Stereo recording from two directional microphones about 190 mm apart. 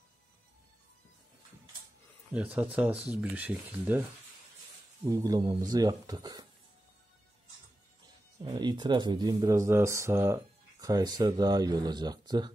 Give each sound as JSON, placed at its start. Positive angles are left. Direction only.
{"t": 2.3, "sound": "speech", "side_deg": -10}
{"t": 5.0, "sound": "speech", "side_deg": -20}
{"t": 8.5, "sound": "speech", "side_deg": -25}